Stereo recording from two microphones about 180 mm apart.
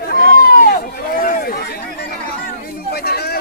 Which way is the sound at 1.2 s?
55° left (ahead or behind).